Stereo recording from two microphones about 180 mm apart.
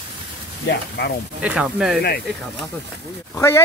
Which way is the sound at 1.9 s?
55° left (ahead or behind).